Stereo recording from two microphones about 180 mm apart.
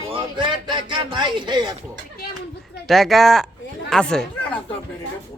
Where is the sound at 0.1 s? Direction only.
25° right (ahead or behind).